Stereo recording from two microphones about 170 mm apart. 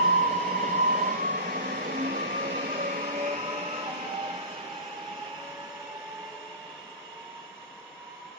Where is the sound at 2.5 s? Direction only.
40° right (ahead or behind).